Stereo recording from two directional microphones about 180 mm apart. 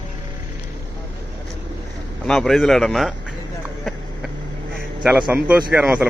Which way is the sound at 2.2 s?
Centre (ahead or behind).